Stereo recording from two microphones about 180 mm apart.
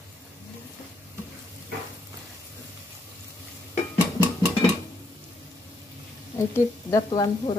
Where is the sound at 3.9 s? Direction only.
10° right (ahead or behind).